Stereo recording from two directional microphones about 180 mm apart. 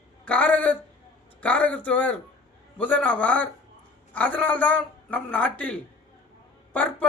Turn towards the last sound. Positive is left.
turn(degrees=10)  # may be behind; listen again after turning